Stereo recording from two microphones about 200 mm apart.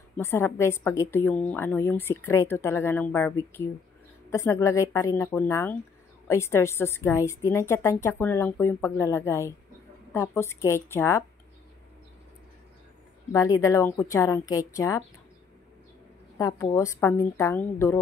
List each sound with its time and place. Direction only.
0.2 s a woman's voice: 15° left (ahead or behind)
13.3 s a woman's voice: 20° left (ahead or behind)
16.3 s a woman's voice: 15° left (ahead or behind)